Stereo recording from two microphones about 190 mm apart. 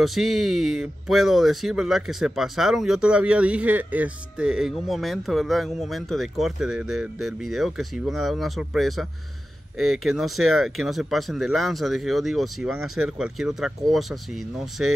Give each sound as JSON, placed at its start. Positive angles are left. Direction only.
{"t": 0.0, "sound": "speech", "side_deg": 0}